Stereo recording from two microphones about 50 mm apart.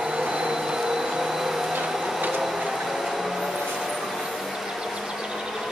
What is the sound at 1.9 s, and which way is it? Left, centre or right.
Printer, centre.